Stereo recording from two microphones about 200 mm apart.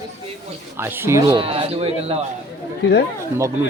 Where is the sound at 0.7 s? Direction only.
10° right (ahead or behind).